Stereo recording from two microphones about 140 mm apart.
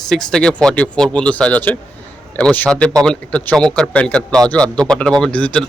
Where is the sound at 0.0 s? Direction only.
5° left (ahead or behind).